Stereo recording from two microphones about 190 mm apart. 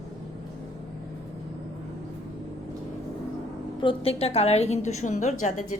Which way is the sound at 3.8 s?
30° left (ahead or behind).